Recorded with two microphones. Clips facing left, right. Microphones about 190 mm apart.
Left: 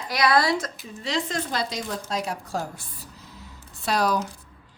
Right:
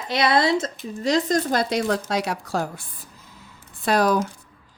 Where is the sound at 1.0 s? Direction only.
40° right (ahead or behind).